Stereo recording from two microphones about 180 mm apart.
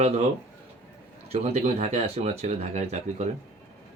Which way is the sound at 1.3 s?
40° right (ahead or behind).